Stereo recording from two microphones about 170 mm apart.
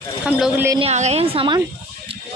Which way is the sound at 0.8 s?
40° right (ahead or behind).